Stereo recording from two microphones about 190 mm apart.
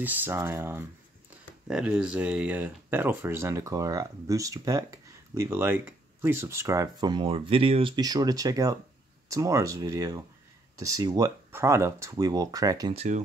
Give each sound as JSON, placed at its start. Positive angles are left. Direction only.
{"t": 0.0, "sound": "speech", "side_deg": -10}
{"t": 12.9, "sound": "speech", "side_deg": -35}